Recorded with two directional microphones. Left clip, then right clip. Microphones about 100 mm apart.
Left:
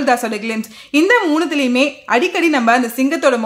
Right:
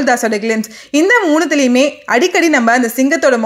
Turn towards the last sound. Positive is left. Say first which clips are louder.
# right 3 dB
turn(degrees=-30)  # may be behind; listen again after turning